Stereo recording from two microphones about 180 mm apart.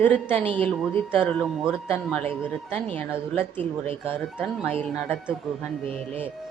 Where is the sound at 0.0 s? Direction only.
10° left (ahead or behind).